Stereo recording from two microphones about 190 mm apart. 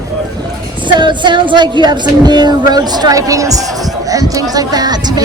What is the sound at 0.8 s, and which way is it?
Speech, 25° right (ahead or behind).